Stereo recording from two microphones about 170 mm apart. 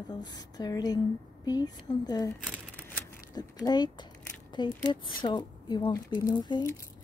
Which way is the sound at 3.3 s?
25° left (ahead or behind).